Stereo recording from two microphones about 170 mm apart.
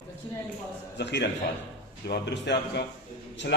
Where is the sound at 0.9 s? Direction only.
85° left.